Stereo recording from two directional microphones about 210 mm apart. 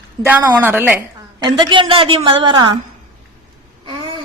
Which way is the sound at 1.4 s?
20° right (ahead or behind).